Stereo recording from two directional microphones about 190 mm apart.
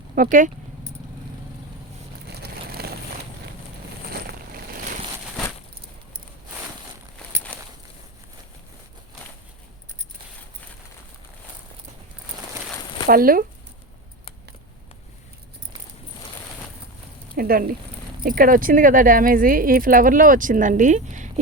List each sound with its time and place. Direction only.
0.2 s speech: 45° right (ahead or behind)
2.3 s a sound: 55° right (ahead or behind)
4.1 s a sound: 50° right (ahead or behind)
7.5 s walk: 5° left (ahead or behind)
13.1 s speech: 50° right (ahead or behind)
17.3 s speech: 50° right (ahead or behind)